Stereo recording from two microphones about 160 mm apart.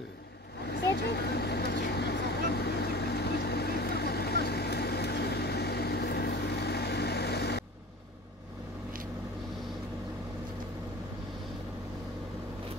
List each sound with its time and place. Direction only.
0.9 s vehicle: 90° left